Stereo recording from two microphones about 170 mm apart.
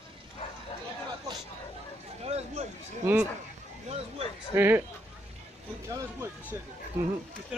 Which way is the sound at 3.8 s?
35° right (ahead or behind).